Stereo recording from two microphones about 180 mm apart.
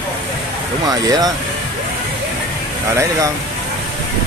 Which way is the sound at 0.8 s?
20° right (ahead or behind).